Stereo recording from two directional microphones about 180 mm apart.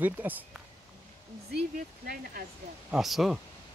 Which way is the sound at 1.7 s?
50° right (ahead or behind).